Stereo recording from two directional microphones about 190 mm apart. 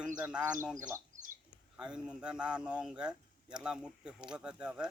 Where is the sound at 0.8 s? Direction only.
15° right (ahead or behind).